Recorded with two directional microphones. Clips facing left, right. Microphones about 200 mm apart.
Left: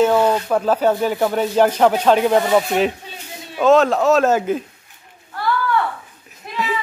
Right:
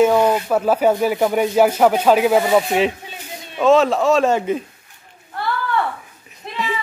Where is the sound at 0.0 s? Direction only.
10° right (ahead or behind).